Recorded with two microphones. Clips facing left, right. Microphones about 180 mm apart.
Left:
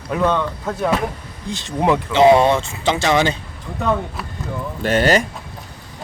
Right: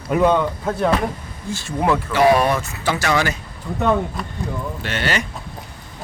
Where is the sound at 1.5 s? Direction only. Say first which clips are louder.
Left 2 dB; 20° left (ahead or behind).